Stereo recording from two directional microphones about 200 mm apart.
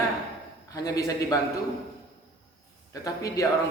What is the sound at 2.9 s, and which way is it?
Speech, 15° left (ahead or behind).